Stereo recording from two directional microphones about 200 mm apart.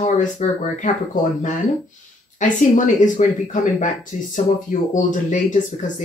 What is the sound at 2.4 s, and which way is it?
Speech, 40° left (ahead or behind).